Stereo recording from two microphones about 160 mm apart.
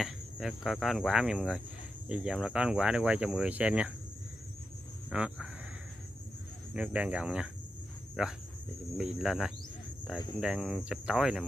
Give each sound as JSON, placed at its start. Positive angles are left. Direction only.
{"t": 0.0, "sound": "speech", "side_deg": 0}
{"t": 5.1, "sound": "speech", "side_deg": -5}
{"t": 6.7, "sound": "speech", "side_deg": -5}